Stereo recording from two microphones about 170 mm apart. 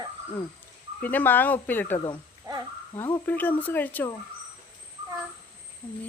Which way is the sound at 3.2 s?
10° left (ahead or behind).